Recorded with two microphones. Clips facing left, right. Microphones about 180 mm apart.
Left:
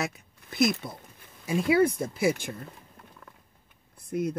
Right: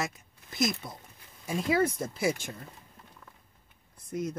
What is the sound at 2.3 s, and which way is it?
Speech, 55° left (ahead or behind).